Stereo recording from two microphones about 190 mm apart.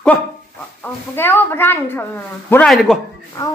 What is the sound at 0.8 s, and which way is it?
A woman's voice, 10° left (ahead or behind).